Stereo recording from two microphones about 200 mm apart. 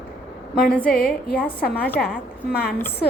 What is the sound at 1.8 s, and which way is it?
Speech, 10° left (ahead or behind).